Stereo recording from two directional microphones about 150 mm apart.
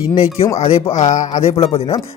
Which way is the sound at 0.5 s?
45° left (ahead or behind).